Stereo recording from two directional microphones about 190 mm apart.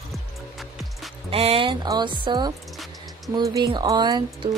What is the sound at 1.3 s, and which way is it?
Music, 30° right (ahead or behind).